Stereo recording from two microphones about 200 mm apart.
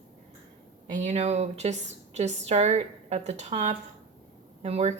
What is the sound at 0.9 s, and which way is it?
Speech, 35° right (ahead or behind).